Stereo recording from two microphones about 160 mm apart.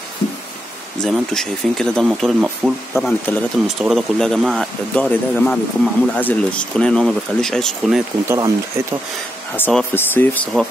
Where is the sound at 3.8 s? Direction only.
Centre (ahead or behind).